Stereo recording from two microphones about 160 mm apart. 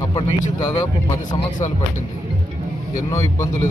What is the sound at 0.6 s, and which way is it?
Speech, 20° left (ahead or behind).